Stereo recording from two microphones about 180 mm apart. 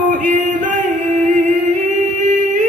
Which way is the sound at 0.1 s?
45° right (ahead or behind).